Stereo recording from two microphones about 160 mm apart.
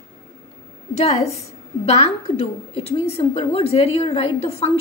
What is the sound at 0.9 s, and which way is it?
Speech, 45° left (ahead or behind).